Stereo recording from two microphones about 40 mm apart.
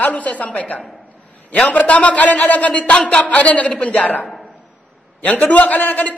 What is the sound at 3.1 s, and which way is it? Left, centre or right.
A woman's voice, left.